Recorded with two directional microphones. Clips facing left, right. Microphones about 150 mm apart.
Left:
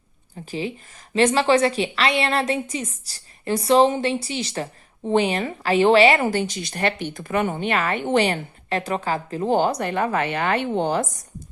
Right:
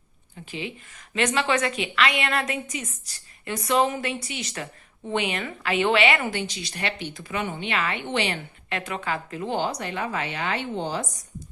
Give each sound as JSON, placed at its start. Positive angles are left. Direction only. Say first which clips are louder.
{"t": 0.3, "sound": "a woman's voice", "louder": "left 6 dB", "side_deg": 35}